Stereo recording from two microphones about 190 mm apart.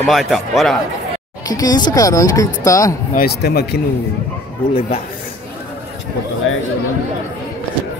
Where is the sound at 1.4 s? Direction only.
20° left (ahead or behind).